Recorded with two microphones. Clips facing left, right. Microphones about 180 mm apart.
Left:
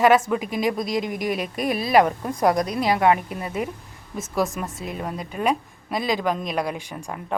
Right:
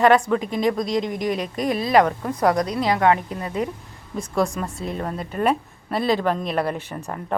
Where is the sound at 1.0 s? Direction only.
25° right (ahead or behind).